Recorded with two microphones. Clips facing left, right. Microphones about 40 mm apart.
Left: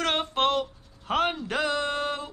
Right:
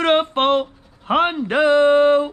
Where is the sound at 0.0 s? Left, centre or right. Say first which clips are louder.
Right 8 dB; right.